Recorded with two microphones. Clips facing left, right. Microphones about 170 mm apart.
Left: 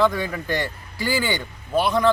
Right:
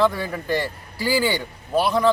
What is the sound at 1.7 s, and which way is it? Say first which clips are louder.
Speech: even; 5° right (ahead or behind).